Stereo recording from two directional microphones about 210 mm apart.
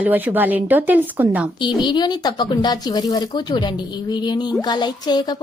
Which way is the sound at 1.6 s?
20° left (ahead or behind).